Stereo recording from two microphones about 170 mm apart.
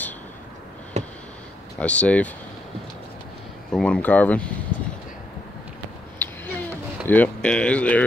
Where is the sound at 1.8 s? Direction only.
10° left (ahead or behind).